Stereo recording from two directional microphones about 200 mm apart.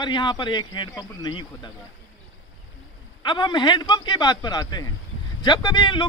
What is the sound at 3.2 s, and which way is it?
Speech, 25° left (ahead or behind).